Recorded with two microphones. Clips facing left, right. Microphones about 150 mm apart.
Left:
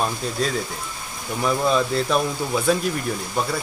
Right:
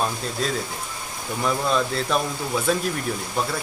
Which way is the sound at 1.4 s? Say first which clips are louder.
Left 3 dB; 5° left (ahead or behind).